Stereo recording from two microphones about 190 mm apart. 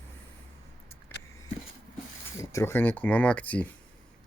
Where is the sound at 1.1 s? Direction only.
10° left (ahead or behind).